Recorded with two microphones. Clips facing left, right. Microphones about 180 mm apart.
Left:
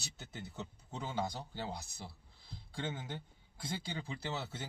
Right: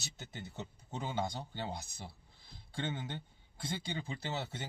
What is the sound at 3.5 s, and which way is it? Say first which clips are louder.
A man's voice: right 2 dB; 25° right (ahead or behind).